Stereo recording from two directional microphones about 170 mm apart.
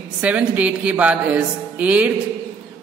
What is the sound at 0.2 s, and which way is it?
Speech, 10° right (ahead or behind).